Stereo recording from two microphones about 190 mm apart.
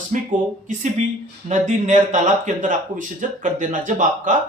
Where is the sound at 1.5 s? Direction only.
40° right (ahead or behind).